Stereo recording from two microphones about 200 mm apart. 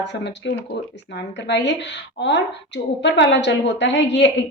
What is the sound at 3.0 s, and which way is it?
A woman's voice, 60° left (ahead or behind).